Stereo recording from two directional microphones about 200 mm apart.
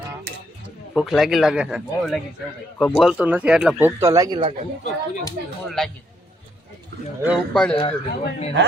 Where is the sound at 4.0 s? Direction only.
15° right (ahead or behind).